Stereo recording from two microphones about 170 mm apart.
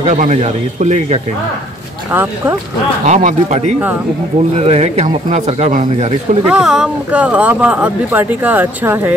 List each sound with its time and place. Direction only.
0.0 s speech: 45° right (ahead or behind)
3.1 s speech: 45° right (ahead or behind)
6.4 s speech: 5° right (ahead or behind)